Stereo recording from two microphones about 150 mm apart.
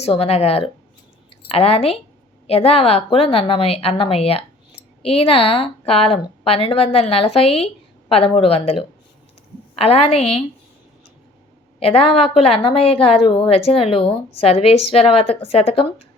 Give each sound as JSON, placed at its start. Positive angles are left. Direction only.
{"t": 0.0, "sound": "a woman's voice", "side_deg": 40}
{"t": 11.8, "sound": "a woman's voice", "side_deg": 40}